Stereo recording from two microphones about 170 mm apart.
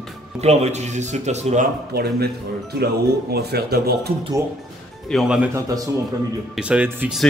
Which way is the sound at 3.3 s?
70° right (ahead or behind).